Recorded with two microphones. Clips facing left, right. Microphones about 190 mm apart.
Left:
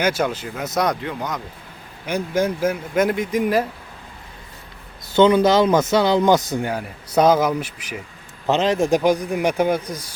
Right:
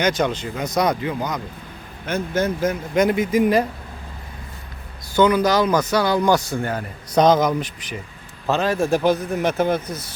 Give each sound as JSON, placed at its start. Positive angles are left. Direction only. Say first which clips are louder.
{"t": 0.0, "sound": "speech", "louder": "right 1 dB", "side_deg": 10}
{"t": 2.0, "sound": "speech", "louder": "left 1 dB", "side_deg": 10}
{"t": 5.1, "sound": "speech", "louder": "left 2 dB", "side_deg": 25}
{"t": 8.4, "sound": "a man's voice", "louder": "left 2 dB", "side_deg": 20}